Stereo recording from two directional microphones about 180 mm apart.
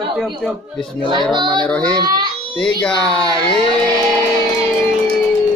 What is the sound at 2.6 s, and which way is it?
Mantra, 5° left (ahead or behind).